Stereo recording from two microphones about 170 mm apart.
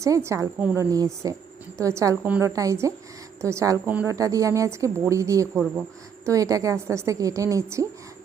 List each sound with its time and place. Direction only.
0.0 s a woman's voice: 15° right (ahead or behind)